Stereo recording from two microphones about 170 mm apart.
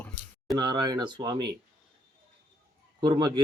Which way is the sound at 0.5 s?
25° right (ahead or behind).